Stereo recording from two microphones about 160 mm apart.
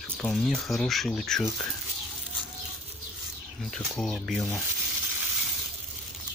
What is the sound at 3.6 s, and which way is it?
Speech, 5° left (ahead or behind).